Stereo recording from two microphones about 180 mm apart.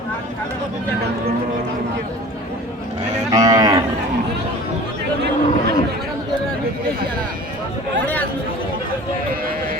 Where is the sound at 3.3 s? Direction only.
20° right (ahead or behind).